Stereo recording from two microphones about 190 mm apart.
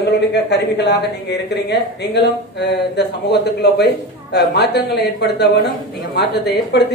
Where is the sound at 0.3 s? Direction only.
60° left (ahead or behind).